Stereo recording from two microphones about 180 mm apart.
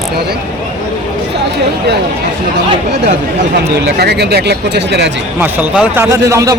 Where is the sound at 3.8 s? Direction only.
65° right (ahead or behind).